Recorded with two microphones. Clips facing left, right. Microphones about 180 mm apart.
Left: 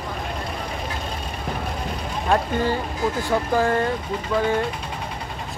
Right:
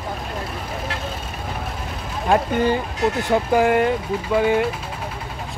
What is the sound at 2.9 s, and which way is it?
Speech, 70° right (ahead or behind).